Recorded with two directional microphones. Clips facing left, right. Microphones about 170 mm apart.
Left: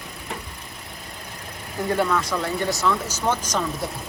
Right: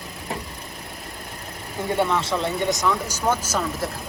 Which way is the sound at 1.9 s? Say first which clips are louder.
Even; 25° right (ahead or behind).